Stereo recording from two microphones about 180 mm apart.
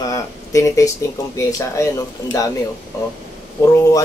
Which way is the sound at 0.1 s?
15° left (ahead or behind).